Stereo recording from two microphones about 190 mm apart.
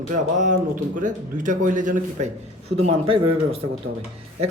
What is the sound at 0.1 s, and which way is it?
A man's voice, 40° right (ahead or behind).